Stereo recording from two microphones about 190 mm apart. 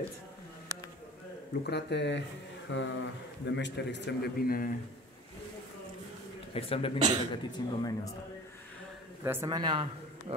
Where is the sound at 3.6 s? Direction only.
65° left (ahead or behind); by 4.7 s 50° left (ahead or behind).